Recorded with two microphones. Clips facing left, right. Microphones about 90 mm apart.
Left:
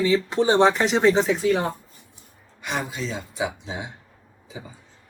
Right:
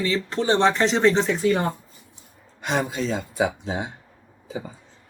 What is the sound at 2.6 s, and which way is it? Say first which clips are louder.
Speech: right 4 dB; 60° right (ahead or behind).